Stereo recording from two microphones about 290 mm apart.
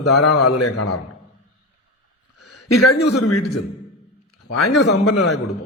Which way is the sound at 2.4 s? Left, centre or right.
Left.